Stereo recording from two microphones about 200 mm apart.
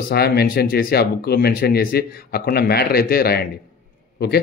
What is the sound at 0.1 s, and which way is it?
Speech, 50° left (ahead or behind).